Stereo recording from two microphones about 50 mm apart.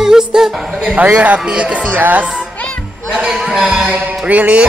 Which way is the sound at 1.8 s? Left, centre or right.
Right.